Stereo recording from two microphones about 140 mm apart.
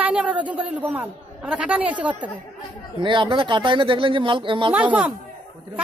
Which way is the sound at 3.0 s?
35° right (ahead or behind).